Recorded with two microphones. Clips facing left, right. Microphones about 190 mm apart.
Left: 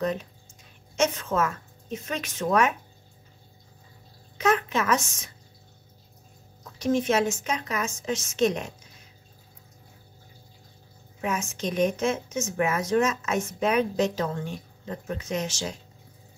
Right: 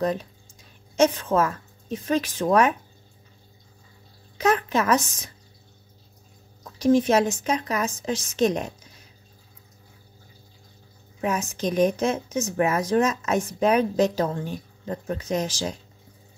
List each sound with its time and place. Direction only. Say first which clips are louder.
0.0 s a woman's voice: right 3 dB; 35° right (ahead or behind)
4.4 s a woman's voice: right 2 dB; 40° right (ahead or behind)
6.8 s a woman's voice: right 5 dB; 35° right (ahead or behind)
11.1 s a woman's voice: right 3 dB; 35° right (ahead or behind)